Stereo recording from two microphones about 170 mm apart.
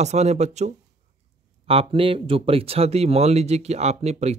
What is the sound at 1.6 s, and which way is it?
Speech, 35° right (ahead or behind).